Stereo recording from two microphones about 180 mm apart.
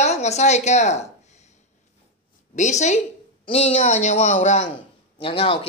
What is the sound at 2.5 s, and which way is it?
Speech, 40° left (ahead or behind).